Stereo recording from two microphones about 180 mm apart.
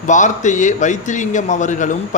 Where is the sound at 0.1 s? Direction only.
45° left (ahead or behind).